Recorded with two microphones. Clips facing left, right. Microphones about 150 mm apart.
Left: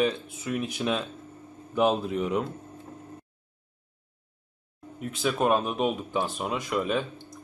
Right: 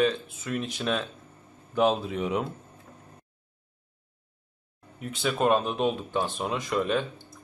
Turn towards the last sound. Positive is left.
turn(degrees=5)  # may be behind; listen again after turning